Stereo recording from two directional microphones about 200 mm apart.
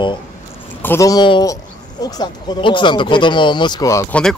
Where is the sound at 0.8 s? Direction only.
15° left (ahead or behind).